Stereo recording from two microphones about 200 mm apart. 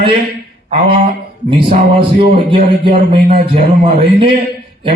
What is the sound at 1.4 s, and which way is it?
A man's voice, 25° right (ahead or behind).